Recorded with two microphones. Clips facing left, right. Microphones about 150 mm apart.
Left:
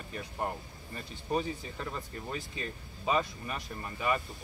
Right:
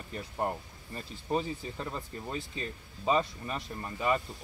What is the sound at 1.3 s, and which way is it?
Speech, 25° right (ahead or behind).